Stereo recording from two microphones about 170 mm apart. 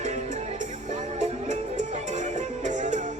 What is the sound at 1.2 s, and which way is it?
Music, 40° right (ahead or behind).